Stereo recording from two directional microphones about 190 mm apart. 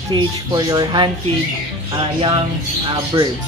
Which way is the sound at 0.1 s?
20° right (ahead or behind).